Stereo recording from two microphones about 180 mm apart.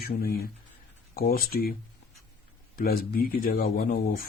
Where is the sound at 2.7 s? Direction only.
55° left (ahead or behind).